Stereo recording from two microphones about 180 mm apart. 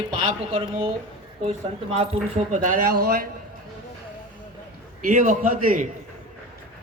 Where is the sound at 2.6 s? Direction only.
50° right (ahead or behind).